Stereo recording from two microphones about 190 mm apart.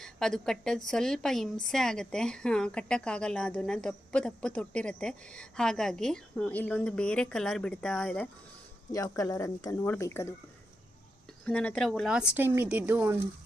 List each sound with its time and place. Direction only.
0.0 s a woman's voice: centre (ahead or behind)
8.9 s speech: 20° left (ahead or behind)
11.4 s a woman's voice: 5° left (ahead or behind); by 13.1 s 10° right (ahead or behind)